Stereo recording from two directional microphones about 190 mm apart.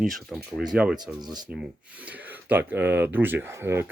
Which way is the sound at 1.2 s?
20° right (ahead or behind).